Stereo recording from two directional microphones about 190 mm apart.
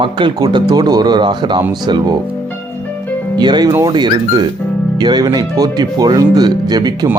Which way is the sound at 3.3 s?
25° right (ahead or behind).